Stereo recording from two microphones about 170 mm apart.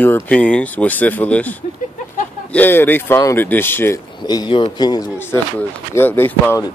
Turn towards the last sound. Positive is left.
turn(degrees=10)  # may be behind; listen again after turning